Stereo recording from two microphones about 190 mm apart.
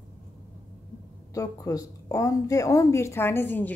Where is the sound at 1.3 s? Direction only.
15° left (ahead or behind).